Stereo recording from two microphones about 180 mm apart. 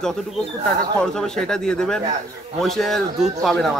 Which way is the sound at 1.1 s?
5° left (ahead or behind).